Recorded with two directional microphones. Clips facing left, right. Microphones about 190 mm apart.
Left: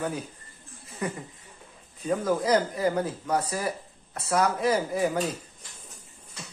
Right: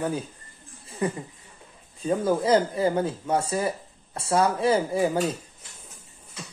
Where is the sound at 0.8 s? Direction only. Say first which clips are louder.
Right 5 dB; 30° right (ahead or behind).